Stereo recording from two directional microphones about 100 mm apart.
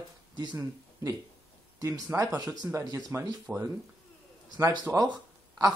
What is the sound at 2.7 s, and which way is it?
Speech, 35° right (ahead or behind).